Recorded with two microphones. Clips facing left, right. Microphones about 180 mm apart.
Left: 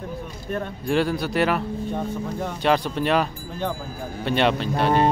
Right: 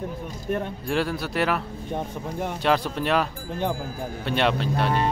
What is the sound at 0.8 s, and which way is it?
Speech, centre (ahead or behind).